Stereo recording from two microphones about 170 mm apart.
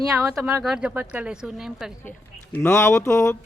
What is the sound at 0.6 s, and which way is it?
Speech, 5° right (ahead or behind).